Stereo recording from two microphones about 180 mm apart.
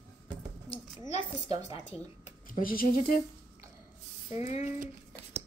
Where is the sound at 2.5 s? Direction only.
50° left (ahead or behind).